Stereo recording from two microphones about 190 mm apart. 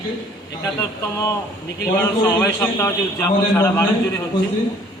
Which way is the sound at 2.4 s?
15° left (ahead or behind).